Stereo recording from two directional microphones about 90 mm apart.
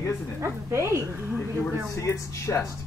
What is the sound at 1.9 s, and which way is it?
Speech, 35° left (ahead or behind).